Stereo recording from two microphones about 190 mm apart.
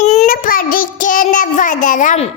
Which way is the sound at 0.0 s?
35° left (ahead or behind).